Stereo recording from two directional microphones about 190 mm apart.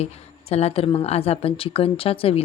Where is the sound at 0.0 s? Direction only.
35° left (ahead or behind).